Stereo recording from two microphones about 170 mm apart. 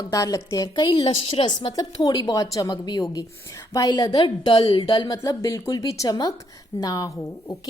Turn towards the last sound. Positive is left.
turn(degrees=20)  # may be behind; listen again after turning